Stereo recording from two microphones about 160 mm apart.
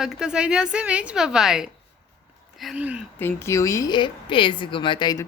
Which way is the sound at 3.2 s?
15° left (ahead or behind).